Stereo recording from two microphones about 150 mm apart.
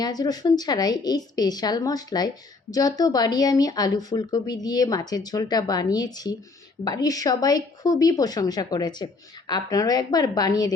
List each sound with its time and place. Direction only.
0.0 s a woman's voice: 25° left (ahead or behind)